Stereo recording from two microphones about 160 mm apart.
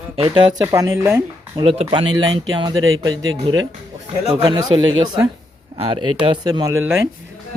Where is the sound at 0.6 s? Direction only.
20° right (ahead or behind).